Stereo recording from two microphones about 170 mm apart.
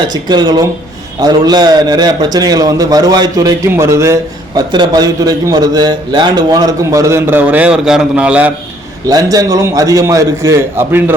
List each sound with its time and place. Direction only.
0.0 s a man's voice: 25° right (ahead or behind); by 8.5 s 10° right (ahead or behind)
9.0 s a man's voice: 20° right (ahead or behind)